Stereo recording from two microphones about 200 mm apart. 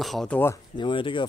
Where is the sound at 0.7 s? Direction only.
25° left (ahead or behind).